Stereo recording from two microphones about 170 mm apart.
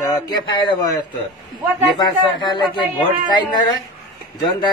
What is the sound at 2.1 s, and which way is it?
Speech, 25° left (ahead or behind).